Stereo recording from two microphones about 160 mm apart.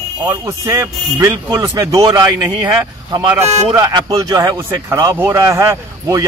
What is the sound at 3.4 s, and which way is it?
Speech, 40° right (ahead or behind).